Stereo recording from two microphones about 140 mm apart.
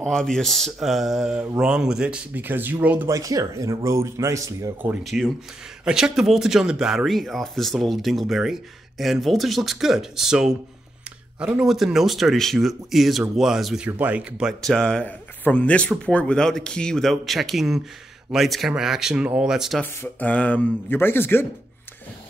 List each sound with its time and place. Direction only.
0.0 s speech: 5° left (ahead or behind); by 3.1 s 10° right (ahead or behind)
3.1 s speech: 25° right (ahead or behind)
5.0 s speech: centre (ahead or behind)
14.6 s speech: 5° left (ahead or behind)
19.8 s speech: 10° left (ahead or behind)